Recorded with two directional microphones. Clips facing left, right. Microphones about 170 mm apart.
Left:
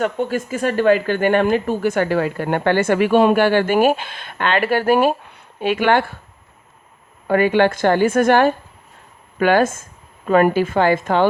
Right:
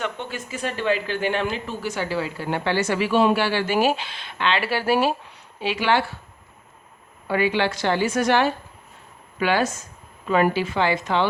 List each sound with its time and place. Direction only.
0.0 s speech: 45° left (ahead or behind)
7.3 s speech: 50° left (ahead or behind)